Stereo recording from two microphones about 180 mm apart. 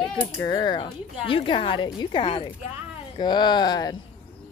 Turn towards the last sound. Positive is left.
turn(degrees=20)  # may be behind; listen again after turning